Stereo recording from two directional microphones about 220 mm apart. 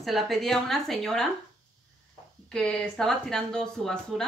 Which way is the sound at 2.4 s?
5° left (ahead or behind).